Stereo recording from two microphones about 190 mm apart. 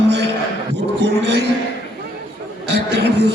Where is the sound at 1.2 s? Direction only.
60° right (ahead or behind).